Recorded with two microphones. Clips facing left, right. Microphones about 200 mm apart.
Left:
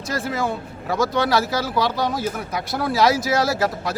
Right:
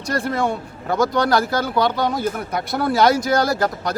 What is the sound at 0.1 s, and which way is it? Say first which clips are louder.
Speech: right 3 dB; centre (ahead or behind).